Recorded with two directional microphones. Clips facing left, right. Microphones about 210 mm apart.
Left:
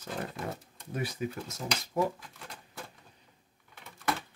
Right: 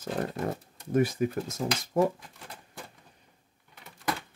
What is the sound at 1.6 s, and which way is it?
Speech, 60° right (ahead or behind).